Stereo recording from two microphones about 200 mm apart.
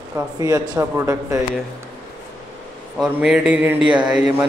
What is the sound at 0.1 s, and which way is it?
Speech, 15° right (ahead or behind).